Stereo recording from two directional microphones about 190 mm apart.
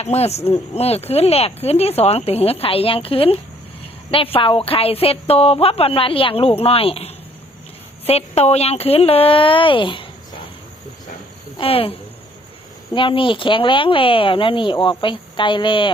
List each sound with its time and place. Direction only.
0.0 s speech: 35° left (ahead or behind)
11.5 s speech: 30° left (ahead or behind)